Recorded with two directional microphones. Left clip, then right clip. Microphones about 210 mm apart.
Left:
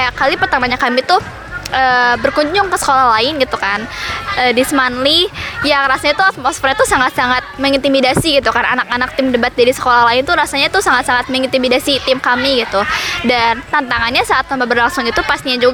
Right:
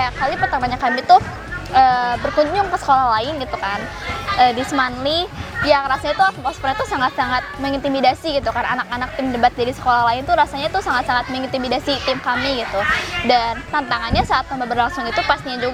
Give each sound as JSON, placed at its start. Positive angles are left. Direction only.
{"t": 0.0, "sound": "a woman's voice", "side_deg": 50}